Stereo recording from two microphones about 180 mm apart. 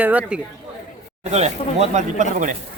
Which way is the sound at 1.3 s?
40° right (ahead or behind).